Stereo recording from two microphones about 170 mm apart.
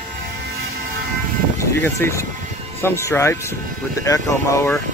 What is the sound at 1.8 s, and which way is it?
Speech, 15° left (ahead or behind).